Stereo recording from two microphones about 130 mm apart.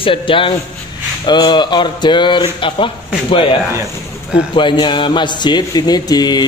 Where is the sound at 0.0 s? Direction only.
40° left (ahead or behind).